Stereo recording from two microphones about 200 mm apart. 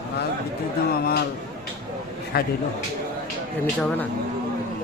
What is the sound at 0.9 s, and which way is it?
Speech, 50° left (ahead or behind).